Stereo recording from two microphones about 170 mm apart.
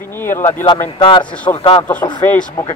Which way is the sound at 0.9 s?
30° left (ahead or behind).